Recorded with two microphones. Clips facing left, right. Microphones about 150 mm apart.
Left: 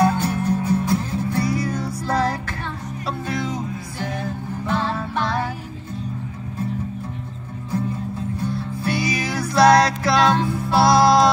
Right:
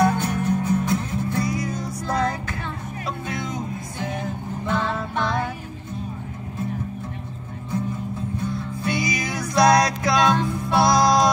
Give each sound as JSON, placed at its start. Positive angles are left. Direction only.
{"t": 0.0, "sound": "music", "side_deg": 30}
{"t": 8.8, "sound": "music", "side_deg": 30}